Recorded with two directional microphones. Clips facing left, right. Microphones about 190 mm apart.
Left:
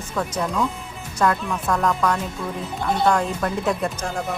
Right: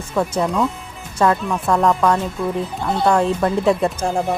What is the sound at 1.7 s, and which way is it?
Speech, 30° right (ahead or behind).